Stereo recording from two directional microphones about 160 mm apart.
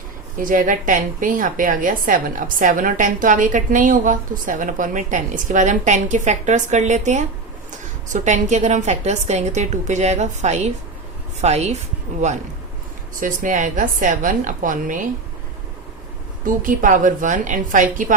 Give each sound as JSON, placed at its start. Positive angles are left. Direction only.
{"t": 0.3, "sound": "a woman's voice", "side_deg": -60}
{"t": 13.1, "sound": "a woman's voice", "side_deg": -55}
{"t": 16.5, "sound": "a woman's voice", "side_deg": -55}